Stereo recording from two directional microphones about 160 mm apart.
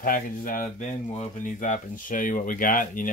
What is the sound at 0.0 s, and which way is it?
Speech, 60° left (ahead or behind).